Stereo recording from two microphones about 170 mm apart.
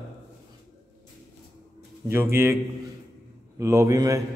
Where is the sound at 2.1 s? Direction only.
15° right (ahead or behind).